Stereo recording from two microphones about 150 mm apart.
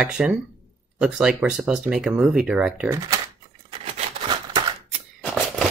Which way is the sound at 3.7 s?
35° right (ahead or behind).